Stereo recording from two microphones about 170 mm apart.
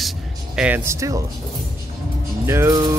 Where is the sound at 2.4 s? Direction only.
15° right (ahead or behind).